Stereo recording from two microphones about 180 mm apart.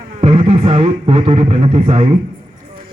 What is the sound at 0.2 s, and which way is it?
A man's voice, 30° right (ahead or behind).